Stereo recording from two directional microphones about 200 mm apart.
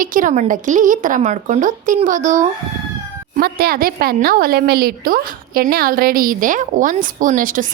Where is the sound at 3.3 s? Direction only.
50° right (ahead or behind).